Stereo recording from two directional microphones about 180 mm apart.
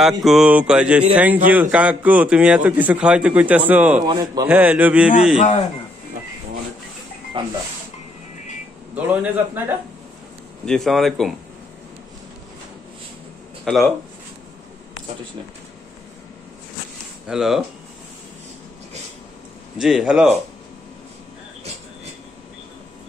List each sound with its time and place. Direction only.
0.0 s mantra: centre (ahead or behind)
1.1 s a man's voice: 10° right (ahead or behind)
4.0 s a man's voice: 20° right (ahead or behind)
4.5 s a man's voice: 10° right (ahead or behind)
7.3 s a man's voice: 30° right (ahead or behind)
8.9 s a man's voice: 10° right (ahead or behind)
10.6 s mantra: 5° left (ahead or behind)
13.7 s mantra: centre (ahead or behind)
17.3 s mantra: centre (ahead or behind)
19.8 s mantra: centre (ahead or behind)